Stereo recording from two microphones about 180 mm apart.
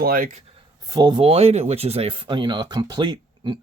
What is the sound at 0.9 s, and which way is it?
Speech, 25° right (ahead or behind).